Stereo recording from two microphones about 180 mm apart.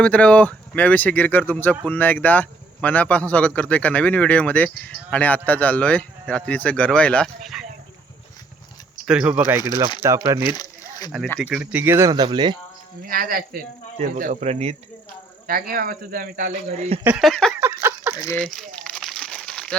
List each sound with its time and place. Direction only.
0.0 s speech: 5° left (ahead or behind)
9.0 s speech: 5° right (ahead or behind)
10.4 s a sound: 20° left (ahead or behind)
11.4 s speech: 5° right (ahead or behind); by 12.5 s 25° right (ahead or behind)
13.1 s speech: 50° right (ahead or behind)
14.2 s speech: 40° right (ahead or behind)
15.4 s speech: 55° right (ahead or behind); by 17.0 s 35° right (ahead or behind)
17.0 s speech: 10° right (ahead or behind)
17.2 s a sound: 5° left (ahead or behind)
17.6 s a sound: 15° right (ahead or behind)
18.1 s speech: 20° left (ahead or behind)
18.3 s crumpling: centre (ahead or behind)